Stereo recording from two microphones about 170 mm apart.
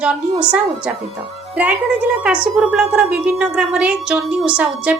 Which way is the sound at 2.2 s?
5° right (ahead or behind).